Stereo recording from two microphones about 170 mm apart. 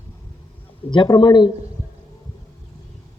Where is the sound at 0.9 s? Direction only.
25° left (ahead or behind).